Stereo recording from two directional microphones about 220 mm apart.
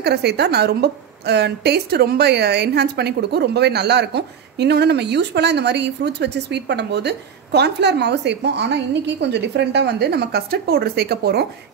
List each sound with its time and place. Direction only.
0.0 s a woman's voice: 50° right (ahead or behind)